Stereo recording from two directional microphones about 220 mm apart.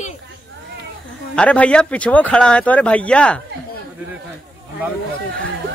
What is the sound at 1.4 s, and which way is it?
Speech, 5° left (ahead or behind).